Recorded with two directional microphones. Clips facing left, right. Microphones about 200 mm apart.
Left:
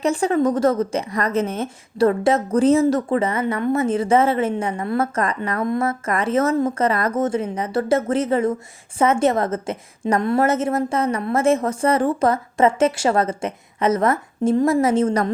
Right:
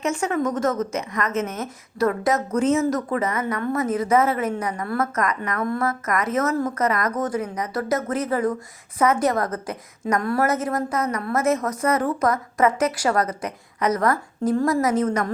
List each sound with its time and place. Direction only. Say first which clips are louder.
0.0 s a woman's voice: left 5 dB; 35° left (ahead or behind)